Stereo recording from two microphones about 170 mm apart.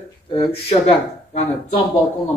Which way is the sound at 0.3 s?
35° left (ahead or behind).